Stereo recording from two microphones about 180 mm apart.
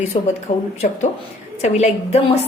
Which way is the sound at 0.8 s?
45° left (ahead or behind).